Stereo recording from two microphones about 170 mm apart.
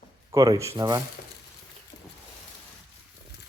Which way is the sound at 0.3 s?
20° right (ahead or behind).